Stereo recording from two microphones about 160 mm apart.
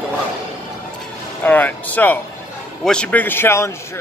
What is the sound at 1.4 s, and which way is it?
A man's voice, 10° left (ahead or behind).